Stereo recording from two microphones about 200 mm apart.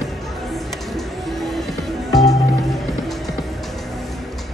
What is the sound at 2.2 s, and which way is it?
Music, centre (ahead or behind).